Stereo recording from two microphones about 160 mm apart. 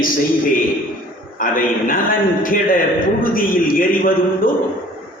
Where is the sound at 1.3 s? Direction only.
60° left (ahead or behind).